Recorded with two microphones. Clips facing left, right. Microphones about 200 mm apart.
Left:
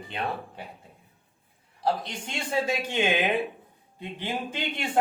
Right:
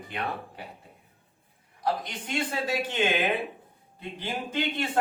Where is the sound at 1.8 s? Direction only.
30° left (ahead or behind).